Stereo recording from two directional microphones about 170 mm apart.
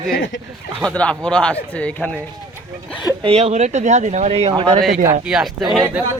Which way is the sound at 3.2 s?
35° right (ahead or behind).